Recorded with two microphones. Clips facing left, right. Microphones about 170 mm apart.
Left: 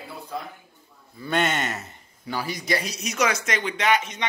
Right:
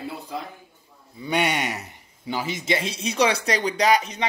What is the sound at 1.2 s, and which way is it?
A man's voice, 15° right (ahead or behind).